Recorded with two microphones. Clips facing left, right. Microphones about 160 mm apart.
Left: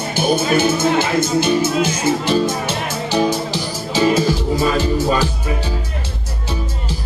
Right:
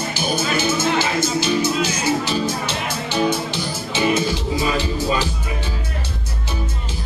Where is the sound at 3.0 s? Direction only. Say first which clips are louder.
Left 3 dB; 40° left (ahead or behind).